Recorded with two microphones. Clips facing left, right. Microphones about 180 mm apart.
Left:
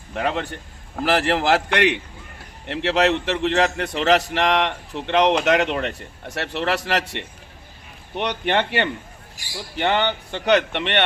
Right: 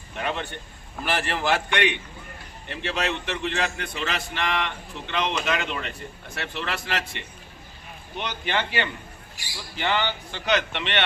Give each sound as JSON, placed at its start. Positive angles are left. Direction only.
{"t": 0.9, "sound": "a man's voice", "side_deg": 90}